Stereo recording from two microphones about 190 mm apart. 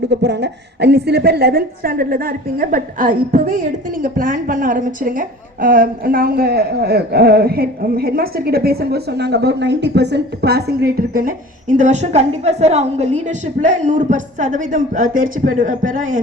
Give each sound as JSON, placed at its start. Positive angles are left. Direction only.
{"t": 0.1, "sound": "a woman's voice", "side_deg": -65}